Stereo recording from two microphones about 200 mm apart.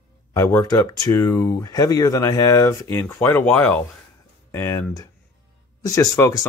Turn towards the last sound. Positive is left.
turn(degrees=15)  # may be behind; listen again after turning